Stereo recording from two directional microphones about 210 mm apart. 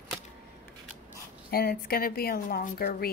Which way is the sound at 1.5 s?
45° left (ahead or behind).